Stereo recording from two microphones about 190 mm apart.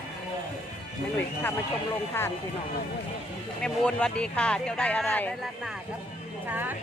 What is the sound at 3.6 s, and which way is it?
Speech, 5° left (ahead or behind).